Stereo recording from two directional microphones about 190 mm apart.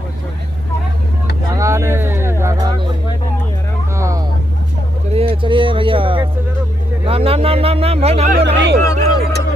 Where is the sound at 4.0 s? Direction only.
15° right (ahead or behind).